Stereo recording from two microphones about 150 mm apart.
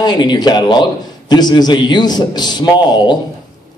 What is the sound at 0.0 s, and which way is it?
A man's voice, 30° left (ahead or behind).